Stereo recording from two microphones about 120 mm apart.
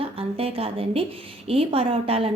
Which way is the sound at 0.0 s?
55° right (ahead or behind).